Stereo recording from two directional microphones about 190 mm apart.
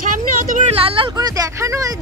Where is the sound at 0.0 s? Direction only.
45° right (ahead or behind).